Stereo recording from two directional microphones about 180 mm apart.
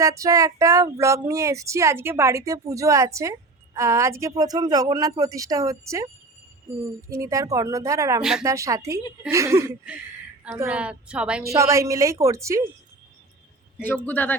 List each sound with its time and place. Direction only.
0.0 s speech: 20° right (ahead or behind)
7.1 s speech: 15° right (ahead or behind)
8.2 s a woman's voice: 5° right (ahead or behind)
8.4 s speech: 15° right (ahead or behind)
10.7 s a woman's voice: 5° right (ahead or behind)
11.4 s speech: 15° right (ahead or behind)
13.8 s speech: 10° left (ahead or behind)